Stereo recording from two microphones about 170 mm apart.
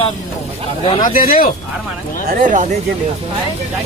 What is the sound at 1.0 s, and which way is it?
Speech, 55° left (ahead or behind).